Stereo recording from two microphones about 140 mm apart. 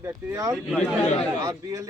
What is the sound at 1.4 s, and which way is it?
Speech, 25° right (ahead or behind).